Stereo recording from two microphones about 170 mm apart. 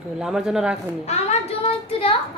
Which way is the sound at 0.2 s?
5° right (ahead or behind).